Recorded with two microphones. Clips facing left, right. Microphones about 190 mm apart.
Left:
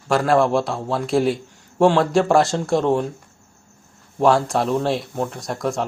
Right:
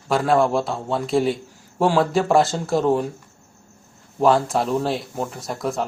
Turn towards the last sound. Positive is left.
turn(degrees=0)  # may be behind; listen again after turning